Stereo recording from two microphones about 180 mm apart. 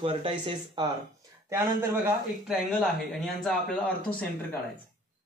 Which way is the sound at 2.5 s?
Centre (ahead or behind).